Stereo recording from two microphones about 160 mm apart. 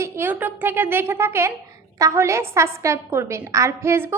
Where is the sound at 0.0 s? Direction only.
15° right (ahead or behind).